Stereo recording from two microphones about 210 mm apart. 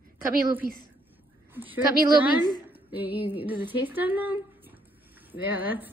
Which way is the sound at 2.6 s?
10° right (ahead or behind).